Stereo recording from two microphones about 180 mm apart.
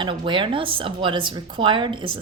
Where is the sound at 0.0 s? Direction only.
25° right (ahead or behind).